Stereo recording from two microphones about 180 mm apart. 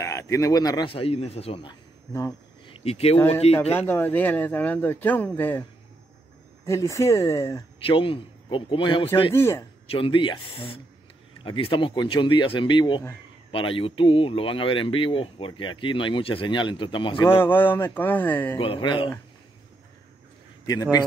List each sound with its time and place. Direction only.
0.0 s speech: 15° left (ahead or behind)
2.7 s speech: 35° left (ahead or behind)
3.7 s speech: 10° left (ahead or behind)
7.8 s speech: 30° left (ahead or behind)
9.3 s speech: 15° left (ahead or behind)
9.8 s speech: 30° left (ahead or behind)
11.4 s speech: 30° left (ahead or behind)
17.4 s speech: 10° left (ahead or behind)
18.6 s speech: 30° left (ahead or behind)
20.6 s speech: 20° left (ahead or behind)